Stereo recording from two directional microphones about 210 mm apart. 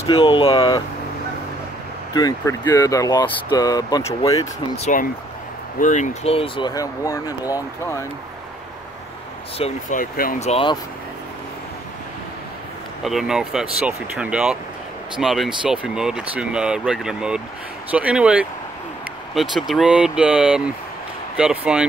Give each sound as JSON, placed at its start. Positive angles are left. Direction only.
{"t": 0.0, "sound": "speech", "side_deg": 25}
{"t": 2.1, "sound": "speech", "side_deg": 20}
{"t": 4.7, "sound": "speech", "side_deg": 30}
{"t": 9.6, "sound": "speech", "side_deg": 40}
{"t": 13.0, "sound": "speech", "side_deg": 0}